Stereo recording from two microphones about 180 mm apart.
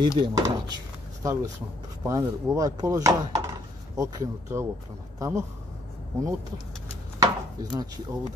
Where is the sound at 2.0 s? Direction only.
15° right (ahead or behind).